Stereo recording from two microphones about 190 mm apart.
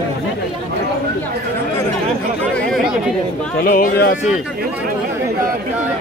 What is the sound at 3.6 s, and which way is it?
Speech, 50° left (ahead or behind).